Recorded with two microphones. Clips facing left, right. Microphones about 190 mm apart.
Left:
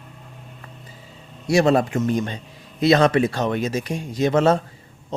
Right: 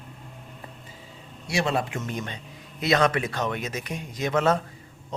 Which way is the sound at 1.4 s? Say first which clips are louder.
Left 9 dB; 40° left (ahead or behind).